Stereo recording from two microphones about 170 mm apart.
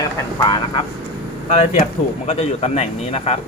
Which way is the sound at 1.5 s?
40° left (ahead or behind).